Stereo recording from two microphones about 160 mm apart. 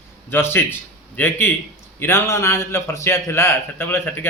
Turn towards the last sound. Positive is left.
turn(degrees=15)  # may be behind; listen again after turning